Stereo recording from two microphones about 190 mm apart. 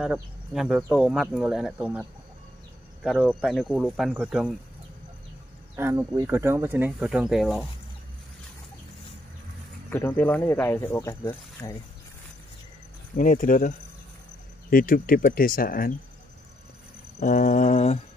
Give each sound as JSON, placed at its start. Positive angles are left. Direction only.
{"t": 0.0, "sound": "speech", "side_deg": -5}
{"t": 5.8, "sound": "speech", "side_deg": -15}
{"t": 9.8, "sound": "speech", "side_deg": 10}
{"t": 13.1, "sound": "speech", "side_deg": 45}
{"t": 17.2, "sound": "a sound", "side_deg": 45}